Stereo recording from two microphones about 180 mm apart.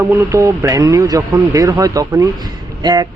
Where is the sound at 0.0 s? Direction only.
15° right (ahead or behind).